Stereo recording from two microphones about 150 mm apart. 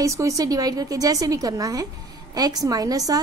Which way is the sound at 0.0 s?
20° right (ahead or behind).